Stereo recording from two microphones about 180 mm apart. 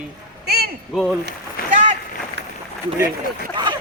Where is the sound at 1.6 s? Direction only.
55° left (ahead or behind).